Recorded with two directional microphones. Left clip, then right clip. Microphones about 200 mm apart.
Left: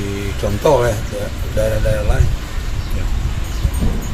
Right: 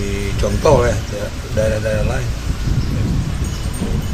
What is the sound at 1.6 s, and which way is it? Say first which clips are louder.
Speech: even; 15° left (ahead or behind).